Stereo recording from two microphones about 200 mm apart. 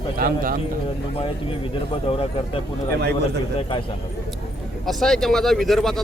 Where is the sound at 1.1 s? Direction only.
25° left (ahead or behind).